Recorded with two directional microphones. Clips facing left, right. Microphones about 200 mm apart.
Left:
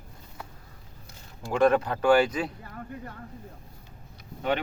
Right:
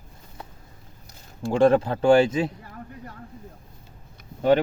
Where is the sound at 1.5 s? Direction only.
30° right (ahead or behind).